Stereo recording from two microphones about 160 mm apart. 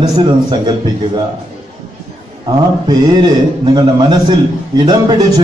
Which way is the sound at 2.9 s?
25° right (ahead or behind).